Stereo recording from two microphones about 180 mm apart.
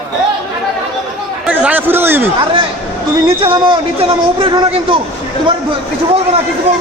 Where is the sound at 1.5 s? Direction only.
10° right (ahead or behind).